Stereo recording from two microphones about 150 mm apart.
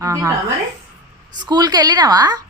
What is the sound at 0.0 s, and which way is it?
Speech, 20° right (ahead or behind).